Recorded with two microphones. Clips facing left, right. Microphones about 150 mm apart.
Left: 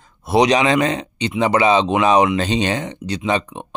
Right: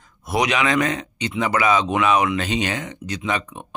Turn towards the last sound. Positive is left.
turn(degrees=30)  # may be behind; listen again after turning